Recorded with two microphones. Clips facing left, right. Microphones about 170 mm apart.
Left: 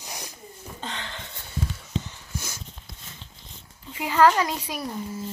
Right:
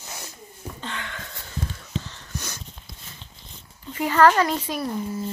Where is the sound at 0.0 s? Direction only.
15° left (ahead or behind).